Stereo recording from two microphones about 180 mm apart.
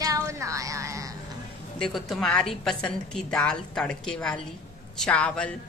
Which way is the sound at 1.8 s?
Centre (ahead or behind).